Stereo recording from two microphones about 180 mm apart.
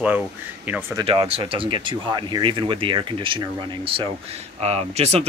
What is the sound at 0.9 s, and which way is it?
Speech, 30° right (ahead or behind).